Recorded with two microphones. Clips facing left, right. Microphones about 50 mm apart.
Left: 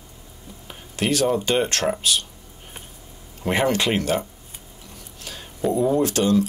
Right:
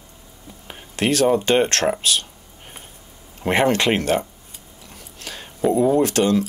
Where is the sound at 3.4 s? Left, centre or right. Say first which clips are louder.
Right 3 dB; right.